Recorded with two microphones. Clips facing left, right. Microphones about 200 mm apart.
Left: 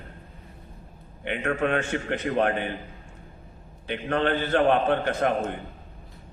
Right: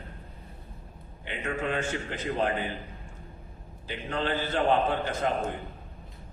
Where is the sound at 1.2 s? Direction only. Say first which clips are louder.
Left 6 dB; 60° left (ahead or behind).